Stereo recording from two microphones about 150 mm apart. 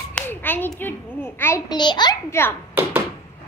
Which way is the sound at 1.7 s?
30° left (ahead or behind).